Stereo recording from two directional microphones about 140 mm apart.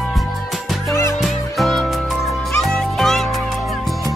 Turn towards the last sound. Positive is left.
turn(degrees=0)  # may be behind; listen again after turning